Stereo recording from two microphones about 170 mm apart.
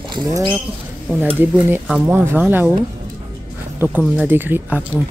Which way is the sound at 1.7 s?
10° right (ahead or behind).